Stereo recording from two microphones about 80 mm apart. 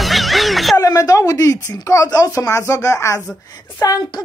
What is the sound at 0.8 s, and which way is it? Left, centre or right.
A woman's voice, left.